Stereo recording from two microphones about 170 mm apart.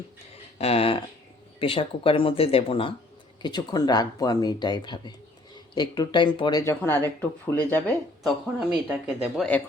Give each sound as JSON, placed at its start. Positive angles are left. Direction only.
{"t": 0.6, "sound": "speech", "side_deg": 35}
{"t": 6.6, "sound": "speech", "side_deg": 15}
{"t": 8.7, "sound": "speech", "side_deg": -5}